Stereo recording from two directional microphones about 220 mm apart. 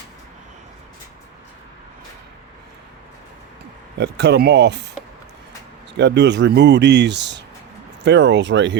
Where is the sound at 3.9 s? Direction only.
50° right (ahead or behind).